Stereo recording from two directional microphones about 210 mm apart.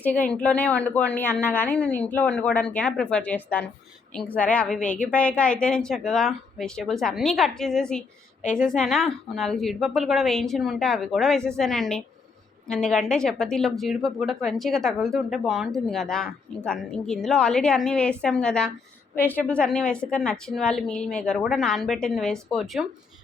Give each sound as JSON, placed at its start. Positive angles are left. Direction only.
{"t": 0.0, "sound": "a woman's voice", "side_deg": 5}